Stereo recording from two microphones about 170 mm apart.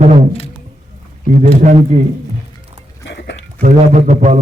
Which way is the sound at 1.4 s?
45° right (ahead or behind).